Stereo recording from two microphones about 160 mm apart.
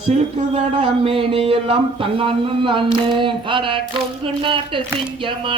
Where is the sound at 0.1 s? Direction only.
40° right (ahead or behind).